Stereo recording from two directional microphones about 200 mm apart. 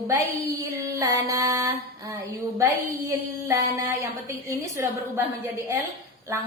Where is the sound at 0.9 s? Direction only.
15° right (ahead or behind).